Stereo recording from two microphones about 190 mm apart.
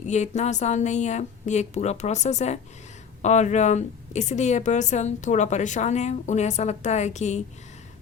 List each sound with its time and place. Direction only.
0.0 s a woman's voice: 40° left (ahead or behind)